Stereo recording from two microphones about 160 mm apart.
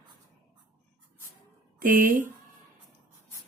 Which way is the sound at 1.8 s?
60° right (ahead or behind).